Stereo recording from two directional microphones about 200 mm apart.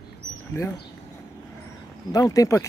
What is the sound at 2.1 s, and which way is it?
Speech, 15° left (ahead or behind).